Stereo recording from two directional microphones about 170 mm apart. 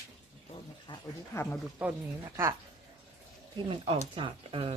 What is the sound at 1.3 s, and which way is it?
Speech, 15° left (ahead or behind).